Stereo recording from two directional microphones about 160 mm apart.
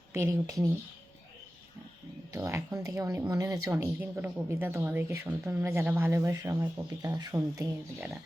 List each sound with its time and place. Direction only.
0.1 s speech: 20° right (ahead or behind)
2.3 s speech: 20° right (ahead or behind)